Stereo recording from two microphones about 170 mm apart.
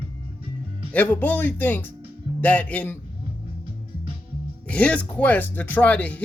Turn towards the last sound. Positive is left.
turn(degrees=10)  # may be behind; listen again after turning